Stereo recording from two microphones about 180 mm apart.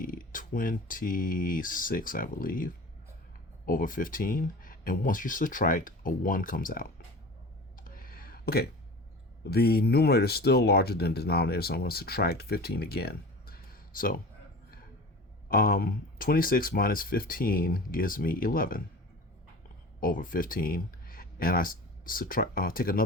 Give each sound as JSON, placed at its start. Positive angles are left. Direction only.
{"t": 0.0, "sound": "speech", "side_deg": 50}
{"t": 7.8, "sound": "a sound", "side_deg": 50}
{"t": 9.5, "sound": "speech", "side_deg": 60}
{"t": 15.4, "sound": "speech", "side_deg": 55}
{"t": 20.0, "sound": "speech", "side_deg": 50}